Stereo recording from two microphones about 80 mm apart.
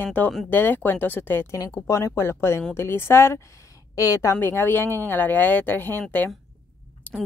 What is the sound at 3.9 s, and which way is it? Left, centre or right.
Speech, left.